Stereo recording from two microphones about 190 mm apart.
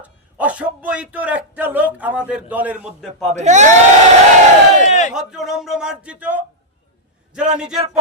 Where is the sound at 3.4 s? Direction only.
40° right (ahead or behind).